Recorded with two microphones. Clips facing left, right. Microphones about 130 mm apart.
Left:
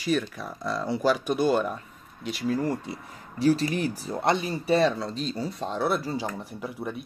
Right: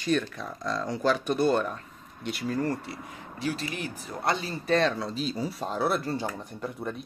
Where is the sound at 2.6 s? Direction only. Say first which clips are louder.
Left 1 dB; 15° left (ahead or behind).